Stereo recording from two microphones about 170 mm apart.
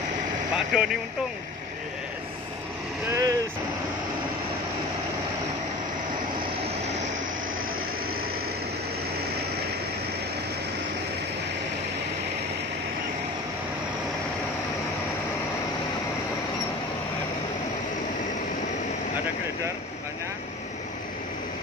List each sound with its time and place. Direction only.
0.6 s speech: 5° right (ahead or behind)
3.1 s speech: 20° right (ahead or behind)